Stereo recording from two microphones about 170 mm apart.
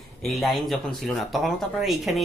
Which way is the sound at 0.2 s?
Centre (ahead or behind).